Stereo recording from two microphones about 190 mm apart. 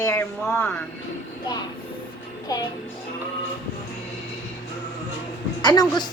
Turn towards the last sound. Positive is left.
turn(degrees=20)  # may be behind; listen again after turning